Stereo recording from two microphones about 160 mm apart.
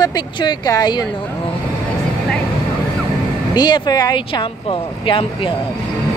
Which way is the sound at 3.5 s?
25° left (ahead or behind).